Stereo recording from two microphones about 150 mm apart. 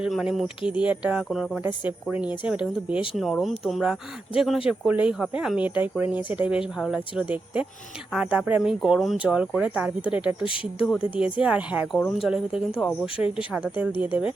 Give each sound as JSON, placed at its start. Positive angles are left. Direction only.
{"t": 0.0, "sound": "speech", "side_deg": -5}
{"t": 10.4, "sound": "speech", "side_deg": 35}
{"t": 11.4, "sound": "speech", "side_deg": -10}
{"t": 11.9, "sound": "speech", "side_deg": 0}